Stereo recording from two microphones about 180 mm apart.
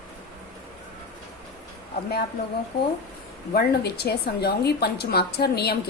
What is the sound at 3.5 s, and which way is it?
A woman's voice, 65° left (ahead or behind).